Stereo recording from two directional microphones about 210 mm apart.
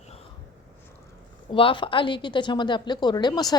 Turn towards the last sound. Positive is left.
turn(degrees=20)  # may be behind; listen again after turning